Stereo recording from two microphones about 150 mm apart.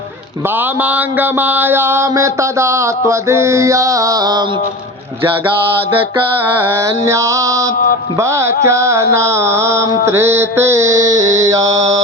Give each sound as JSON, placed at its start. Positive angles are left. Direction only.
{"t": 0.8, "sound": "mantra", "side_deg": -10}
{"t": 6.6, "sound": "mantra", "side_deg": -15}